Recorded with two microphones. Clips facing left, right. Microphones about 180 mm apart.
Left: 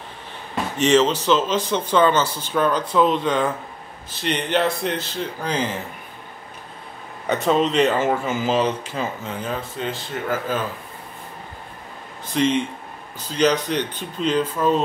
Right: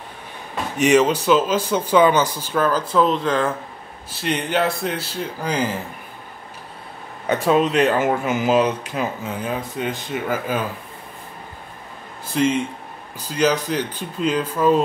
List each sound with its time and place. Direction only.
0.7 s speech: 10° right (ahead or behind)
7.4 s speech: 10° right (ahead or behind)
12.4 s speech: 5° right (ahead or behind)